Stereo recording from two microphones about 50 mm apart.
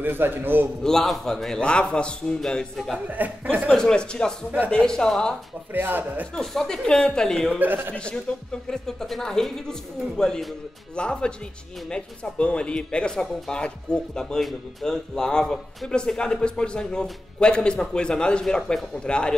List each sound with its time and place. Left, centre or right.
0.0 s a man's voice: right
0.8 s speech: centre
1.6 s a man's voice: centre
3.2 s a man's voice: right
3.7 s speech: centre
5.7 s a man's voice: right
6.3 s speech: centre
7.5 s a man's voice: right
7.9 s a man's voice: left
8.6 s a man's voice: centre